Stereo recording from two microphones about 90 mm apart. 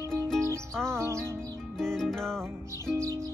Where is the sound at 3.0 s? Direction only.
35° right (ahead or behind).